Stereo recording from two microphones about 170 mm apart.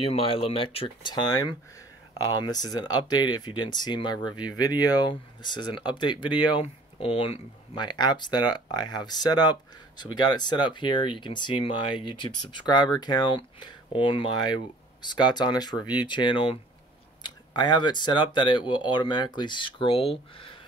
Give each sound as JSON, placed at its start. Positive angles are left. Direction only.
{"t": 0.0, "sound": "speech", "side_deg": 35}